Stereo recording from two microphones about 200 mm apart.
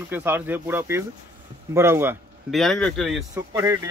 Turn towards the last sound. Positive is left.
turn(degrees=-15)  # may be behind; listen again after turning